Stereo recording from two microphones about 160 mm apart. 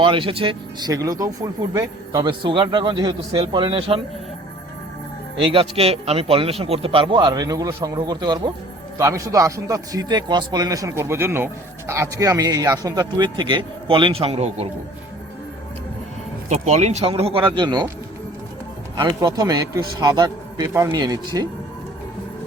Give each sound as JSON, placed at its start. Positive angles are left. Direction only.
{"t": 0.0, "sound": "a man's voice", "side_deg": -35}
{"t": 5.4, "sound": "a man's voice", "side_deg": -35}
{"t": 16.5, "sound": "a man's voice", "side_deg": -45}
{"t": 18.9, "sound": "a man's voice", "side_deg": -25}